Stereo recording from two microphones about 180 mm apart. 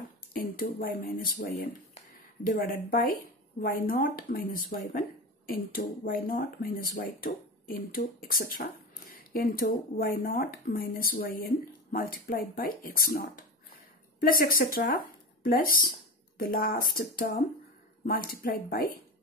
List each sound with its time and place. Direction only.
0.3 s speech: 50° left (ahead or behind)
2.9 s speech: 50° left (ahead or behind)